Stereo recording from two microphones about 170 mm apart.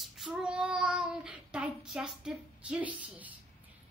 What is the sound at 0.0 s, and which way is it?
Child singing, centre (ahead or behind).